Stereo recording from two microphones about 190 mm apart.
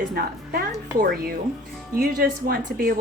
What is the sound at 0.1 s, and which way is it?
A woman's voice, 55° right (ahead or behind).